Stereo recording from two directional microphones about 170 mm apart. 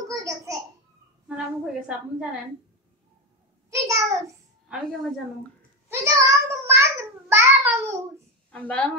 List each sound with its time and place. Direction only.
0.1 s a sound: 20° right (ahead or behind)
3.7 s a child's voice: 20° right (ahead or behind)
4.6 s a woman's voice: centre (ahead or behind)
5.9 s child singing: 15° right (ahead or behind)
8.5 s a woman's voice: 5° left (ahead or behind)